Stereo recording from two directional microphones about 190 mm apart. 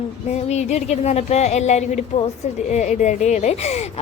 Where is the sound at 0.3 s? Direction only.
35° left (ahead or behind).